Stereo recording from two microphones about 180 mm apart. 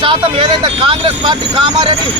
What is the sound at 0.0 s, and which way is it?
Speech, 25° right (ahead or behind).